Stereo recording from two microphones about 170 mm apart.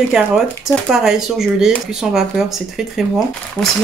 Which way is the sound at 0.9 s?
5° right (ahead or behind).